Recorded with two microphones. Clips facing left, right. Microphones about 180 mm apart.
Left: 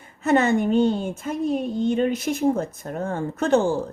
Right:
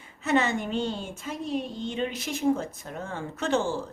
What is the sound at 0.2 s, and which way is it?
Speech, 50° left (ahead or behind).